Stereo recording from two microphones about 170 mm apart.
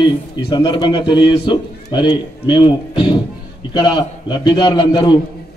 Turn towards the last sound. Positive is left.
turn(degrees=30)  # may be behind; listen again after turning